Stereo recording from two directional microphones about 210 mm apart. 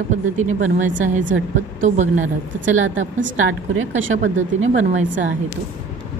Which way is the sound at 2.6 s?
65° right (ahead or behind).